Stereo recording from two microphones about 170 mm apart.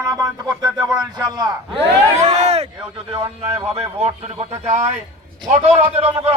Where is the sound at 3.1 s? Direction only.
30° right (ahead or behind).